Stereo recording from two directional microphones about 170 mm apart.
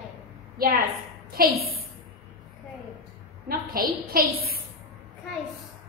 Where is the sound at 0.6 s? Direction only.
60° right (ahead or behind).